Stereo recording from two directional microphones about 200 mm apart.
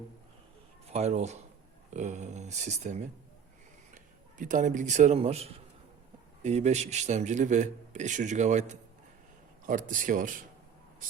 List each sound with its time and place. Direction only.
0.9 s a man's voice: 35° right (ahead or behind)